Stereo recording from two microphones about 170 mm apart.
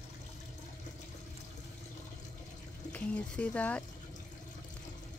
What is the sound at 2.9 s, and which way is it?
Speech, 10° left (ahead or behind).